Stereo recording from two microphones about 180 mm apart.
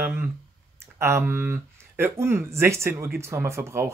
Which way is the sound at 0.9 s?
15° right (ahead or behind).